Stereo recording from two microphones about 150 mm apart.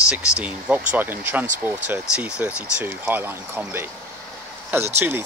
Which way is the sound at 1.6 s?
10° right (ahead or behind).